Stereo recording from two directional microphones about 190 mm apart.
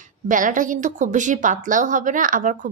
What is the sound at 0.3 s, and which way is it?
A woman's voice, 45° right (ahead or behind).